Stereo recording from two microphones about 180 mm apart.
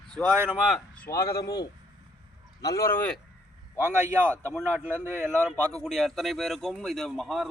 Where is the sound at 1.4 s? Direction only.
20° left (ahead or behind).